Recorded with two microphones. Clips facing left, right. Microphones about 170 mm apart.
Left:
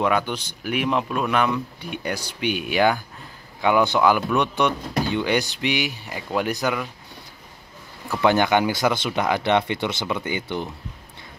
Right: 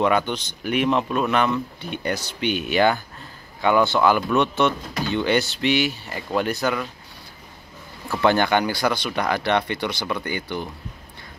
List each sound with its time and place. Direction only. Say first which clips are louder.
0.0 s speech: right 2 dB; 5° left (ahead or behind)
8.1 s speech: even; 10° left (ahead or behind)